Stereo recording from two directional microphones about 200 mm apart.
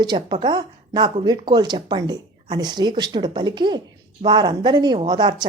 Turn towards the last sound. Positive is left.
turn(degrees=-20)  # may be behind; listen again after turning